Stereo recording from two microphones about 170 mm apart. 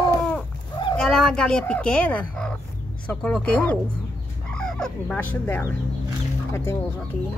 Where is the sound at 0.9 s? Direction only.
5° left (ahead or behind).